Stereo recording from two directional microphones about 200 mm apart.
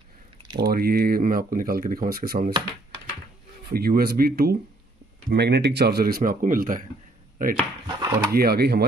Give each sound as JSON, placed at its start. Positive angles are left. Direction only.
{"t": 0.6, "sound": "speech", "side_deg": -50}
{"t": 3.6, "sound": "speech", "side_deg": -50}
{"t": 7.5, "sound": "a sound", "side_deg": -20}
{"t": 8.3, "sound": "speech", "side_deg": -50}